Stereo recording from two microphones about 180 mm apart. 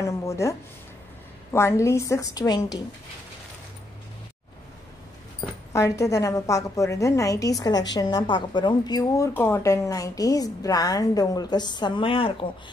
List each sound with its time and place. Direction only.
0.0 s a sound: 15° left (ahead or behind)
1.5 s a woman's voice: 15° left (ahead or behind)
5.7 s a woman's voice: 15° left (ahead or behind)